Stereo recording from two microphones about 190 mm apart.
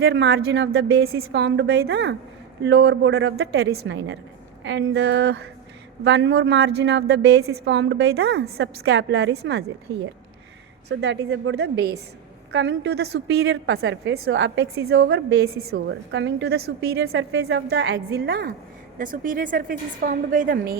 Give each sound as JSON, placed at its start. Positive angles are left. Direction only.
{"t": 0.0, "sound": "a woman's voice", "side_deg": -60}
{"t": 14.8, "sound": "a woman's voice", "side_deg": -60}
{"t": 15.6, "sound": "a woman's voice", "side_deg": -60}